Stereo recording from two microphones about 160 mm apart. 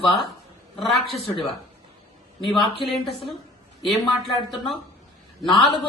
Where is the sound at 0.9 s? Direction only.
Centre (ahead or behind).